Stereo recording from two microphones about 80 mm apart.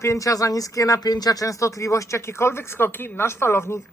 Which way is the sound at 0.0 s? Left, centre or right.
Left.